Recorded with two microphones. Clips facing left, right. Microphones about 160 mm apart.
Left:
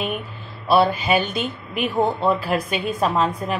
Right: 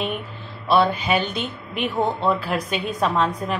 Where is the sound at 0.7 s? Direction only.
5° left (ahead or behind).